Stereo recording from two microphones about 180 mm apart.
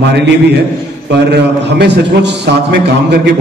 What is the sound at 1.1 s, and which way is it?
A man's voice, 70° right (ahead or behind).